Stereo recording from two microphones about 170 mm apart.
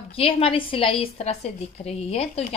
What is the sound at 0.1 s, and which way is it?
Speech, 35° left (ahead or behind).